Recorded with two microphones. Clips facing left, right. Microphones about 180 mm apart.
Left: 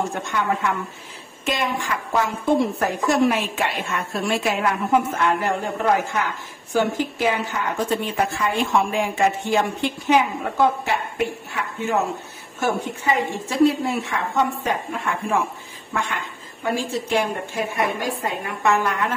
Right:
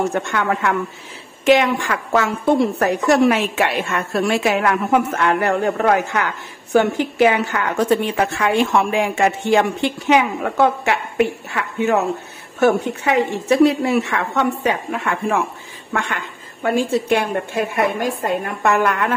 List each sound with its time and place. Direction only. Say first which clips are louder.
0.1 s a woman's voice: right 4 dB; 75° right (ahead or behind)
15.9 s a woman's voice: right 3 dB; 65° right (ahead or behind)